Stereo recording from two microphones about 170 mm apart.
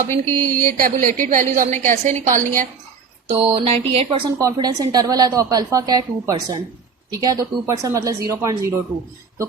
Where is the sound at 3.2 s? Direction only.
35° right (ahead or behind).